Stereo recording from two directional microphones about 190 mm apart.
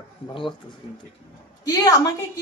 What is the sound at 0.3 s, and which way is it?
A man's voice, 25° left (ahead or behind).